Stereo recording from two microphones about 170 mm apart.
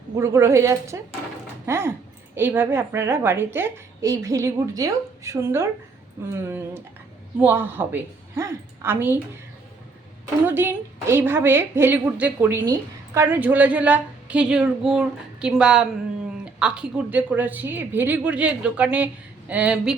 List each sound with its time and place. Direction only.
0.2 s a woman's voice: 15° right (ahead or behind)
10.4 s a woman's voice: 10° right (ahead or behind)